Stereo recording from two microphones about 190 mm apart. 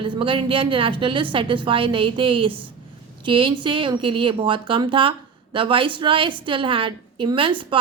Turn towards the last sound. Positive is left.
turn(degrees=-25)  # may be behind; listen again after turning